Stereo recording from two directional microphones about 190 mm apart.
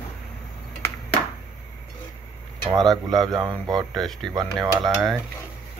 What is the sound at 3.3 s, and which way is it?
Speech, 20° right (ahead or behind).